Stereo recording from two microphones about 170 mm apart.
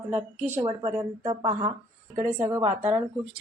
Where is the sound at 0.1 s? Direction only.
10° right (ahead or behind).